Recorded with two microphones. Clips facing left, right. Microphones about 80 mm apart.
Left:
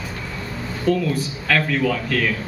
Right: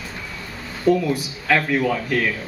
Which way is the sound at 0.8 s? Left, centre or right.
Centre.